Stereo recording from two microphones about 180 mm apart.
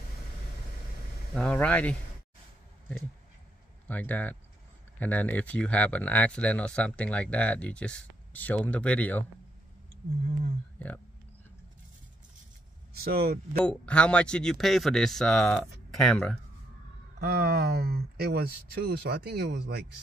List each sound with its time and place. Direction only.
1.3 s speech: 5° left (ahead or behind)
3.8 s speech: 10° left (ahead or behind)
13.0 s speech: 60° right (ahead or behind)
13.7 s speech: 5° left (ahead or behind)
17.2 s speech: 60° right (ahead or behind)